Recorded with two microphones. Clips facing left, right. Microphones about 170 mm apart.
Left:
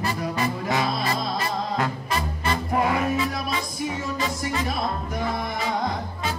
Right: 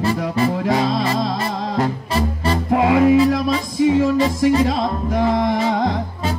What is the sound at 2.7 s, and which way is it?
Music, 90° right.